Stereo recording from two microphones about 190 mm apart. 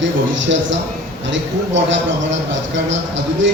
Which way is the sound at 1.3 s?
75° right (ahead or behind).